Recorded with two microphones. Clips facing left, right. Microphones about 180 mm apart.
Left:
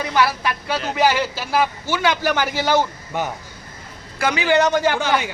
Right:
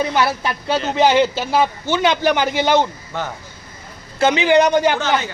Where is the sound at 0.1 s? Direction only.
25° right (ahead or behind).